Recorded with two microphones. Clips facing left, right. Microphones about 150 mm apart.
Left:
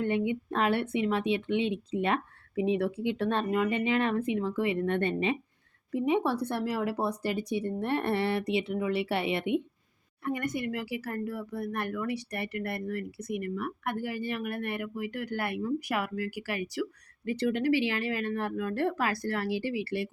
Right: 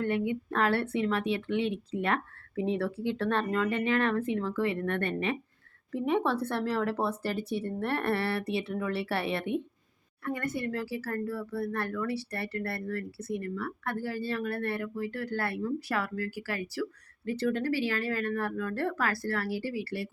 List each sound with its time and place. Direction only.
0.0 s speech: 20° left (ahead or behind)